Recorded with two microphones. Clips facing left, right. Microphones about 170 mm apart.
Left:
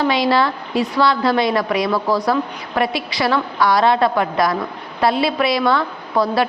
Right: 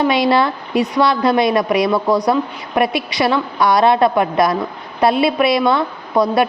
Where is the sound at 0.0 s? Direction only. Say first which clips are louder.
Right 2 dB; 25° right (ahead or behind).